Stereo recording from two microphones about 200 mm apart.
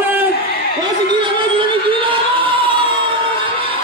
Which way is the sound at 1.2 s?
25° right (ahead or behind).